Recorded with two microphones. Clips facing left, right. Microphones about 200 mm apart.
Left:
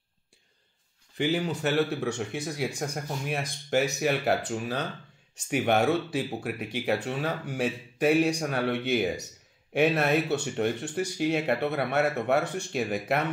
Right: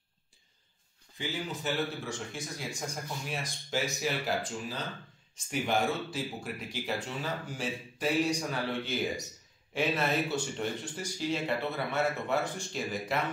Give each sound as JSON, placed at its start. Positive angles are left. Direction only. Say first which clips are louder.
{"t": 1.1, "sound": "speech", "louder": "left 9 dB", "side_deg": 70}